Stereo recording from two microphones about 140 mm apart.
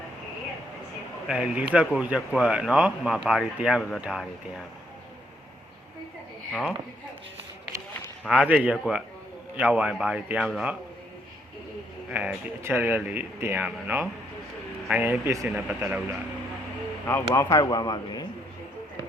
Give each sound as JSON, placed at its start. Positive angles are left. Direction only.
{"t": 1.3, "sound": "speech", "side_deg": -10}
{"t": 6.5, "sound": "a woman's voice", "side_deg": 0}
{"t": 8.3, "sound": "a woman's voice", "side_deg": -10}
{"t": 12.1, "sound": "speech", "side_deg": -15}
{"t": 15.4, "sound": "speech", "side_deg": -5}
{"t": 17.1, "sound": "a man's voice", "side_deg": 20}